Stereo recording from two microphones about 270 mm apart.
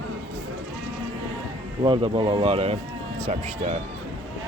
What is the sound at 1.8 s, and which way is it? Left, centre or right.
Speech, centre.